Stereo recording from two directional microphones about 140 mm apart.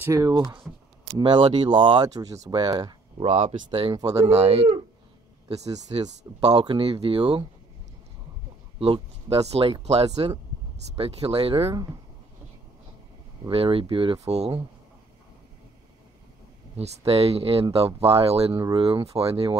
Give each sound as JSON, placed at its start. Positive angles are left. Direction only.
{"t": 0.0, "sound": "speech", "side_deg": -25}
{"t": 3.3, "sound": "speech", "side_deg": -45}
{"t": 3.9, "sound": "speech", "side_deg": -25}
{"t": 4.3, "sound": "speech", "side_deg": -45}
{"t": 5.5, "sound": "speech", "side_deg": -25}
{"t": 6.6, "sound": "speech", "side_deg": -40}
{"t": 8.7, "sound": "speech", "side_deg": -45}
{"t": 13.5, "sound": "speech", "side_deg": -40}
{"t": 16.7, "sound": "speech", "side_deg": -45}